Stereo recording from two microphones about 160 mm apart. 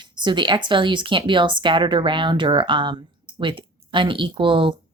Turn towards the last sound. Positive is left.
turn(degrees=-30)  # may be behind; listen again after turning